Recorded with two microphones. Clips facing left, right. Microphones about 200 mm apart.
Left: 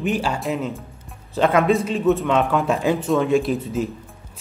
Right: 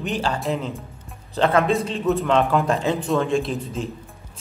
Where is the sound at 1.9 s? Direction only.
Centre (ahead or behind).